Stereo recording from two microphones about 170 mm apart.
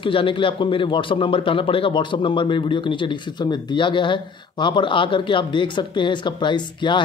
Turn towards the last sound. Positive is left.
turn(degrees=25)  # may be behind; listen again after turning